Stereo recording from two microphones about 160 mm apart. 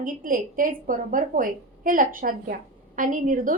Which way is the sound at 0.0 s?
60° right (ahead or behind).